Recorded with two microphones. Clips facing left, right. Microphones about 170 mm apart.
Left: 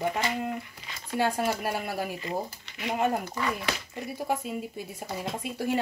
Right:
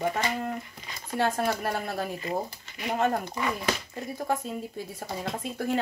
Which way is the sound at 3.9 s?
10° left (ahead or behind).